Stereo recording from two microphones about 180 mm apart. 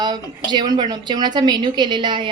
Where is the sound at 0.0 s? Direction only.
25° right (ahead or behind).